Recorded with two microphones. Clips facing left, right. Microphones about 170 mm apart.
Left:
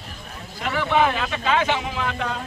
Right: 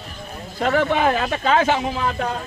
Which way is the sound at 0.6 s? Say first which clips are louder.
Right 3 dB; 45° right (ahead or behind).